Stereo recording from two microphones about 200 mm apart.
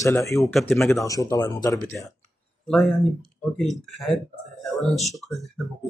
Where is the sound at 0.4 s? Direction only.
Centre (ahead or behind).